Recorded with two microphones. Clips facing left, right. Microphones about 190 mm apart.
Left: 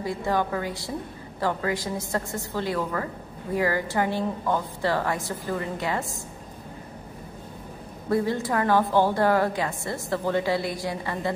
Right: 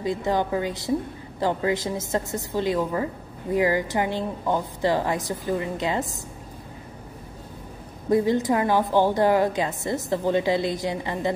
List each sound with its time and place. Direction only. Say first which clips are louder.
0.0 s a woman's voice: right 2 dB; 20° right (ahead or behind)
8.1 s a woman's voice: right 4 dB; 20° right (ahead or behind)